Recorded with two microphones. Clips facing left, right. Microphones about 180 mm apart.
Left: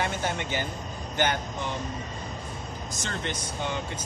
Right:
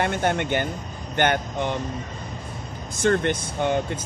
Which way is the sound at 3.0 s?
60° right (ahead or behind).